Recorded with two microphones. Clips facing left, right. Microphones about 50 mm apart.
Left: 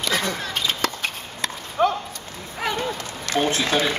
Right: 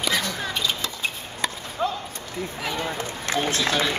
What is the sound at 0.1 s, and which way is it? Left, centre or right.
Chop, left.